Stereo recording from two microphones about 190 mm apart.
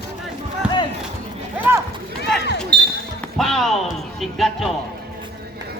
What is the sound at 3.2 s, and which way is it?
Speech, centre (ahead or behind).